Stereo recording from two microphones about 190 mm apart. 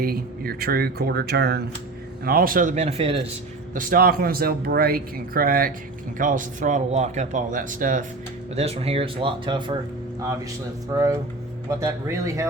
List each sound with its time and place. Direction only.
0.0 s speech: 50° right (ahead or behind); by 3.2 s 30° right (ahead or behind)
3.8 s speech: 50° right (ahead or behind)
8.5 s speech: 30° right (ahead or behind)
10.9 s speech: 15° right (ahead or behind)